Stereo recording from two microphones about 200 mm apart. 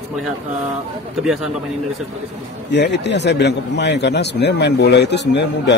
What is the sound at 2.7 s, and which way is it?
A man's voice, 60° left (ahead or behind).